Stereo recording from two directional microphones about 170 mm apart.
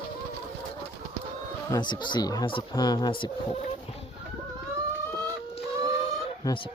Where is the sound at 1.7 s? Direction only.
25° left (ahead or behind).